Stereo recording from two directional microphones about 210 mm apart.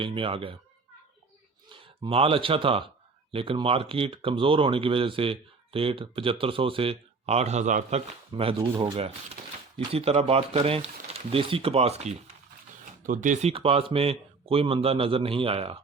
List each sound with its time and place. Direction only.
0.0 s speech: 25° right (ahead or behind)
1.7 s speech: 25° right (ahead or behind)